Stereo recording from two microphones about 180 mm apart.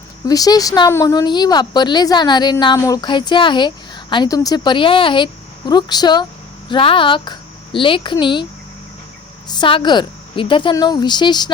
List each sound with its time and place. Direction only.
0.3 s speech: 20° left (ahead or behind)
9.5 s speech: 25° left (ahead or behind)